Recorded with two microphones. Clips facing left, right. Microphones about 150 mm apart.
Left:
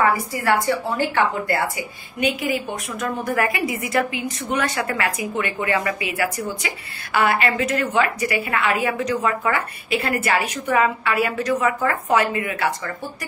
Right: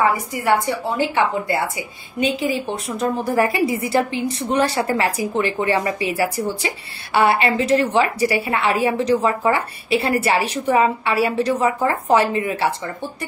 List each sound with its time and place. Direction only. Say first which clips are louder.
0.0 s a woman's voice: right 1 dB; 20° right (ahead or behind)
2.1 s a woman's voice: right 2 dB; 30° right (ahead or behind)